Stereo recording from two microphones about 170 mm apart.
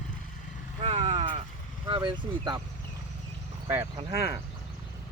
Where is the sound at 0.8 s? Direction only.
40° right (ahead or behind).